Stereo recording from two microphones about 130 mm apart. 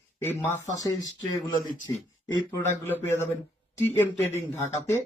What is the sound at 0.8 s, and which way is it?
Speech, 30° left (ahead or behind).